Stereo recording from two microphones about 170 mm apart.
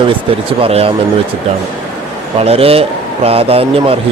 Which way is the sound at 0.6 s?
35° right (ahead or behind).